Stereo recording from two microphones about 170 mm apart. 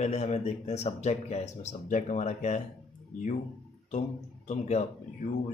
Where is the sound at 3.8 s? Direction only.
45° left (ahead or behind).